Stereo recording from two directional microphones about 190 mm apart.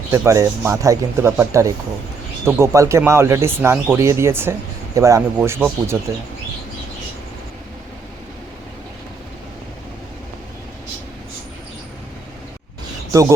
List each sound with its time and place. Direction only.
0.1 s speech: 15° right (ahead or behind)
13.1 s speech: 15° right (ahead or behind)